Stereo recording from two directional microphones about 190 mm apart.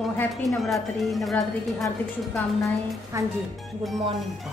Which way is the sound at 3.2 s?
15° right (ahead or behind).